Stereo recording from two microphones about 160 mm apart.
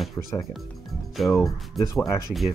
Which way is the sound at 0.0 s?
Centre (ahead or behind).